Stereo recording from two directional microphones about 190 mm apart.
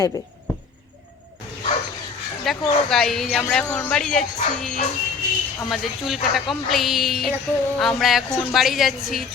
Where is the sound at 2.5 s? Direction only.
Centre (ahead or behind).